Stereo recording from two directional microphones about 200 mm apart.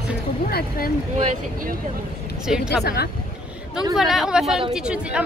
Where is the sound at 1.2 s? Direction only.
35° right (ahead or behind).